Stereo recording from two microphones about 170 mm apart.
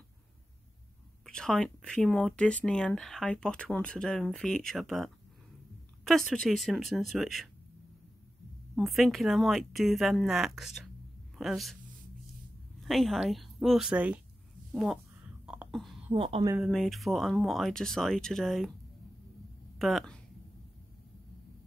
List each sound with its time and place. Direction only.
1.2 s speech: 5° left (ahead or behind)
8.7 s speech: centre (ahead or behind)
12.8 s speech: centre (ahead or behind)
14.7 s a sound: centre (ahead or behind)
16.1 s a woman's voice: 35° right (ahead or behind)
16.5 s speech: centre (ahead or behind)
19.8 s speech: centre (ahead or behind)